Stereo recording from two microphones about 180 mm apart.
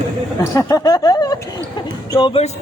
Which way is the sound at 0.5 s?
20° left (ahead or behind).